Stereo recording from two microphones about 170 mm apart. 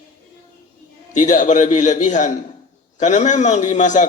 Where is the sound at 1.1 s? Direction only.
50° left (ahead or behind).